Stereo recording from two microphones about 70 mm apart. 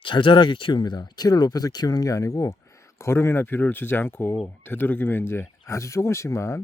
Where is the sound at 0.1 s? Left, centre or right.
Left.